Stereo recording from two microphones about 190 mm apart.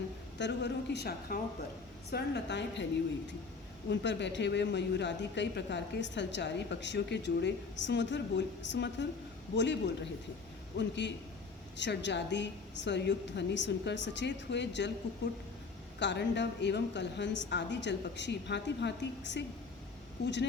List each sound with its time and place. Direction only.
0.3 s a woman's voice: 65° left (ahead or behind)
3.8 s speech: 70° left (ahead or behind)
16.0 s speech: 65° left (ahead or behind)